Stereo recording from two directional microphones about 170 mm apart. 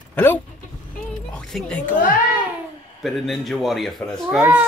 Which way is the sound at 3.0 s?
Centre (ahead or behind).